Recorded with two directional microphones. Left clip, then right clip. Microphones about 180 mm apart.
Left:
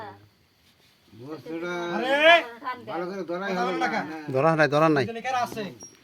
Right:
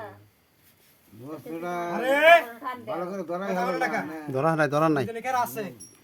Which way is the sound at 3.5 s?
20° right (ahead or behind).